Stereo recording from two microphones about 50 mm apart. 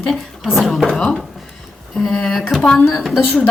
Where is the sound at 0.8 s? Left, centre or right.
Centre.